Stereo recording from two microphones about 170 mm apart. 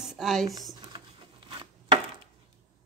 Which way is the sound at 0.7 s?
30° right (ahead or behind).